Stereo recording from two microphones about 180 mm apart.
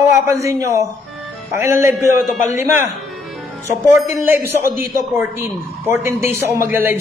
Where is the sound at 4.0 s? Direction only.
15° right (ahead or behind).